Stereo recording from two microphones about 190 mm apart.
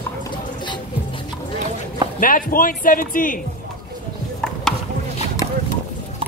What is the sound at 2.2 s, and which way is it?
Speech, 45° left (ahead or behind).